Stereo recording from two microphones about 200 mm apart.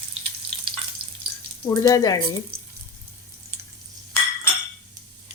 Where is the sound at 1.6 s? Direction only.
15° left (ahead or behind).